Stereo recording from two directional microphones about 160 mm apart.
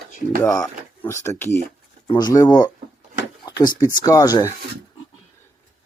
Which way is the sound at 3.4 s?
25° left (ahead or behind).